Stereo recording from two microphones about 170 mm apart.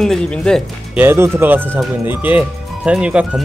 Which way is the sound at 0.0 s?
5° left (ahead or behind).